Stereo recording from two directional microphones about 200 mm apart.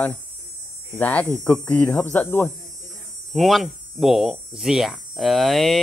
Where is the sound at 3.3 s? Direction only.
Centre (ahead or behind).